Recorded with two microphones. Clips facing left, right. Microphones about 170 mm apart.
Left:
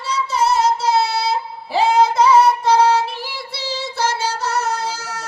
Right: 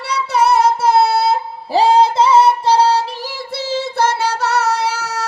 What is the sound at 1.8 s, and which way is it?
Music, 30° right (ahead or behind).